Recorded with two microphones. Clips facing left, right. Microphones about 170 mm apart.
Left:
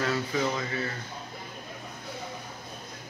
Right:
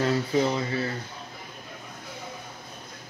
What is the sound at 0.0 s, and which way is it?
Speech, 30° right (ahead or behind).